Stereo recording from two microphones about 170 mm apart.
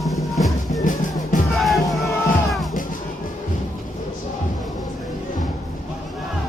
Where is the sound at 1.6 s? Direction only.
Centre (ahead or behind).